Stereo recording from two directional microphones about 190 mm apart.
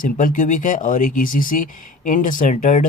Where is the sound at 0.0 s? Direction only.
45° left (ahead or behind).